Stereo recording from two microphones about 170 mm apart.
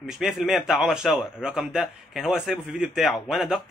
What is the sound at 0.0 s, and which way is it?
Speech, centre (ahead or behind).